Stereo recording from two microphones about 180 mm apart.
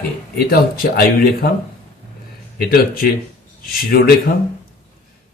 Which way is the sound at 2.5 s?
55° left (ahead or behind).